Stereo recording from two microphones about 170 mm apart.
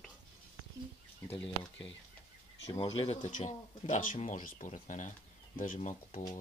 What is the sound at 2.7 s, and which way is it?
Speech, 30° left (ahead or behind).